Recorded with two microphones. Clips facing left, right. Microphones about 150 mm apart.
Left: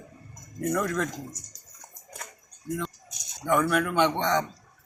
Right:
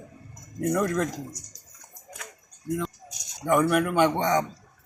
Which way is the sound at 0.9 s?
5° right (ahead or behind).